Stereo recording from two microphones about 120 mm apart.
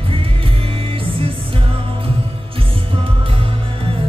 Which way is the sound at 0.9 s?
50° right (ahead or behind).